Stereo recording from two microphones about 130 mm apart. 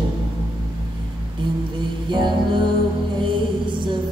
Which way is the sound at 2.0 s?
35° right (ahead or behind).